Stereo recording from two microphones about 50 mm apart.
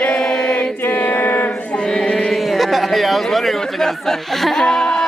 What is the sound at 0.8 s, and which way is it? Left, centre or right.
Chant, left.